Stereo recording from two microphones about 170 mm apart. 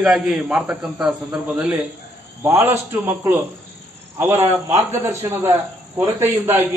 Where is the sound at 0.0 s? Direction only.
5° right (ahead or behind).